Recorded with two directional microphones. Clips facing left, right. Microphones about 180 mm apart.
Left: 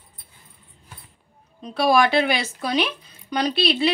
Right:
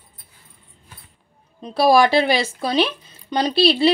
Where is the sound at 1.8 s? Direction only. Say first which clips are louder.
Right 3 dB; 35° right (ahead or behind).